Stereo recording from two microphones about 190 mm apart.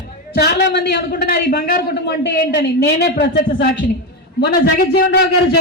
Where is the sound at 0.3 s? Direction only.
60° left (ahead or behind).